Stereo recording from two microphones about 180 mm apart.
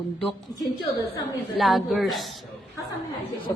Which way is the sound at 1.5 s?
Centre (ahead or behind).